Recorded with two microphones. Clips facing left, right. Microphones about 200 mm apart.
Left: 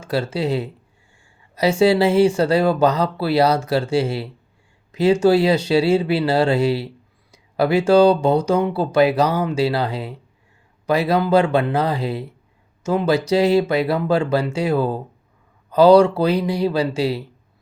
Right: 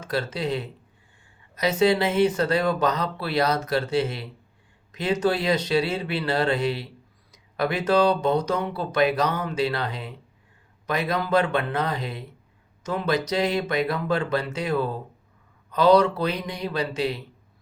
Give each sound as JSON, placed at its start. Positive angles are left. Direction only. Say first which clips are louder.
{"t": 0.1, "sound": "speech", "louder": "left 5 dB", "side_deg": 30}
{"t": 1.8, "sound": "speech", "louder": "left 5 dB", "side_deg": 30}
{"t": 4.9, "sound": "a sound", "louder": "left 10 dB", "side_deg": 30}
{"t": 5.2, "sound": "speech", "louder": "left 8 dB", "side_deg": 30}